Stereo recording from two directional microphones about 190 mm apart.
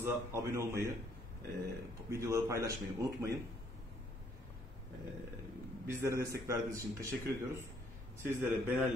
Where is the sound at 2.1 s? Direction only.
15° right (ahead or behind).